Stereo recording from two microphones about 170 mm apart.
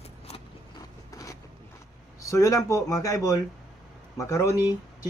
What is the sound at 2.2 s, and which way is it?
Speech, 20° left (ahead or behind).